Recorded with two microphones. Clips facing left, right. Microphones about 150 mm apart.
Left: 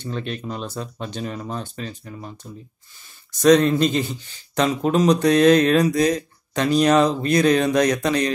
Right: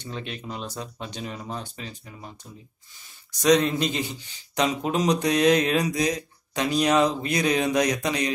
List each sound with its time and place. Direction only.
0.0 s speech: 15° right (ahead or behind)
3.6 s speech: 15° right (ahead or behind)